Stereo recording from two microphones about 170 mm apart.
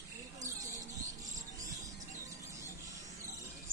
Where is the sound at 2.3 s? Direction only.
20° right (ahead or behind).